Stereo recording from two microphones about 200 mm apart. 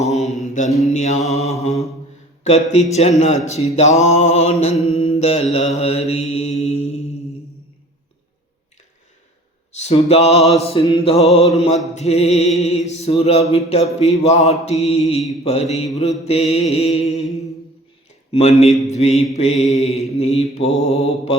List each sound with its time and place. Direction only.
0.0 s mantra: 35° left (ahead or behind)
0.7 s mantra: centre (ahead or behind)
1.3 s mantra: 35° left (ahead or behind)
2.4 s speech: 35° left (ahead or behind)
2.9 s mantra: 35° left (ahead or behind)
9.7 s mantra: 30° left (ahead or behind)
18.3 s a man's voice: 30° left (ahead or behind)
18.9 s mantra: 35° left (ahead or behind)